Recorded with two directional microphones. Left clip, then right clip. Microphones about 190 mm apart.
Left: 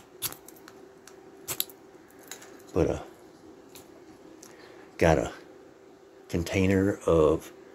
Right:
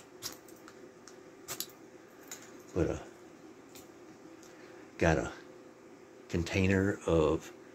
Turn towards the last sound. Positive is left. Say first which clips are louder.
# left 6 dB
turn(degrees=20)  # may be behind; listen again after turning